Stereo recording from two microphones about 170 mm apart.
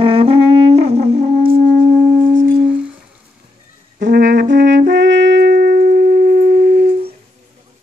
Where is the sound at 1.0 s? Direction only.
65° right (ahead or behind).